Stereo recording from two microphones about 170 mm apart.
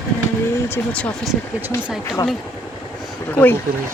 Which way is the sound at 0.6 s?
10° left (ahead or behind).